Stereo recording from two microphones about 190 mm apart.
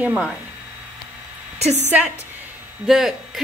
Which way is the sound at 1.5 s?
35° right (ahead or behind).